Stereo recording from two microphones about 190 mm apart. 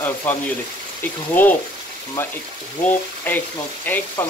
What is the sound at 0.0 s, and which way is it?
Speech, 15° left (ahead or behind).